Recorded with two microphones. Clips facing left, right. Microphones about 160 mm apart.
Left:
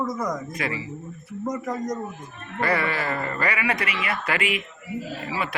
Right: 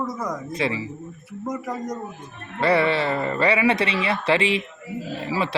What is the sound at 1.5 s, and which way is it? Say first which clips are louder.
Speech: left 1 dB; 5° right (ahead or behind).